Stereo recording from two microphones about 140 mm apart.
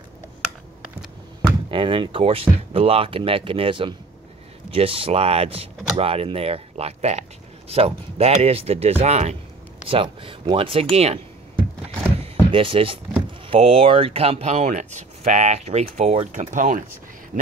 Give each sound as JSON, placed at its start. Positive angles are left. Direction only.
{"t": 1.7, "sound": "speech", "side_deg": -35}
{"t": 9.8, "sound": "speech", "side_deg": -40}
{"t": 12.2, "sound": "a sound", "side_deg": -40}
{"t": 13.5, "sound": "speech", "side_deg": -45}